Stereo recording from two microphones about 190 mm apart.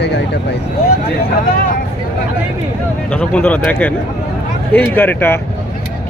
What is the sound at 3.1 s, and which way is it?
Speech, 5° left (ahead or behind).